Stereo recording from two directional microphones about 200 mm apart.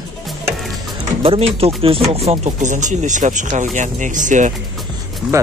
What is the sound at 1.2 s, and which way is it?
Speech, 30° right (ahead or behind).